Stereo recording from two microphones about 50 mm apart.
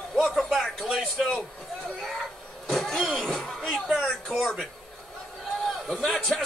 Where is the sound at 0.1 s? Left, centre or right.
Centre.